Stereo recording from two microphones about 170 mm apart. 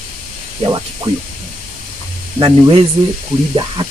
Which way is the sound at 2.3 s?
30° right (ahead or behind).